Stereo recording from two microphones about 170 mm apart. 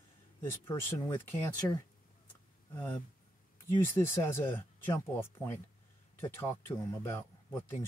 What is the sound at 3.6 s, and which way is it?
Speech, 15° left (ahead or behind).